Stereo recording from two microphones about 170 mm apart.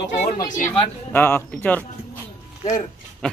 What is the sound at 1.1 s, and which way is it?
Speech, 15° left (ahead or behind).